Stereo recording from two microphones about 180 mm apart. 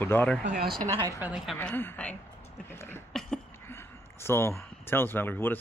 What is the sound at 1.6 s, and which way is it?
Speech, 10° left (ahead or behind).